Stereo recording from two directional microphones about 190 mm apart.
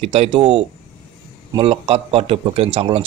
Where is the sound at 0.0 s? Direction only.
35° right (ahead or behind).